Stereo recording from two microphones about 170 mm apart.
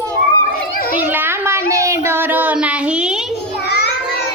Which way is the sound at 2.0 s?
10° right (ahead or behind).